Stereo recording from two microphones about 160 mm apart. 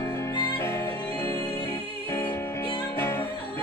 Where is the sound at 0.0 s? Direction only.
15° left (ahead or behind).